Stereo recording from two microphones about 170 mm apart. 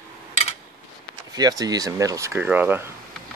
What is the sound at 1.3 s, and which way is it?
Speech, 20° right (ahead or behind).